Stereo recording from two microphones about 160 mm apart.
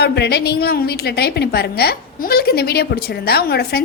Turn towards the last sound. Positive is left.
turn(degrees=80)